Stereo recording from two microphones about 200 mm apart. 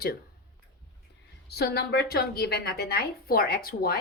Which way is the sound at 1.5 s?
55° left (ahead or behind).